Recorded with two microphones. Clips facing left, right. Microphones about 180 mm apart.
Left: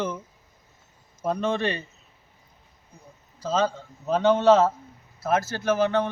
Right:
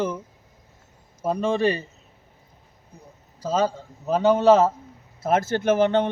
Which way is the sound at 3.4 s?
15° right (ahead or behind).